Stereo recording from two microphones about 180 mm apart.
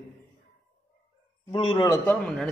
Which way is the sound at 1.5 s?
25° left (ahead or behind).